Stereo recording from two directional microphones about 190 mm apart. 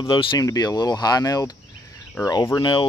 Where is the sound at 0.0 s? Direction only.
25° left (ahead or behind).